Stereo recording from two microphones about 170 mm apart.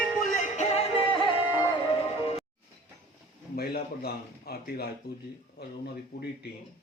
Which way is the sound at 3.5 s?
70° left (ahead or behind).